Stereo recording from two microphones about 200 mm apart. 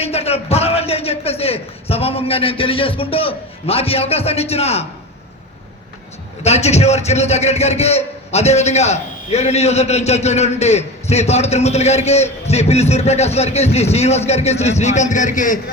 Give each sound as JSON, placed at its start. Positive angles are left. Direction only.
{"t": 0.0, "sound": "a man's voice", "side_deg": 30}
{"t": 6.4, "sound": "a man's voice", "side_deg": 35}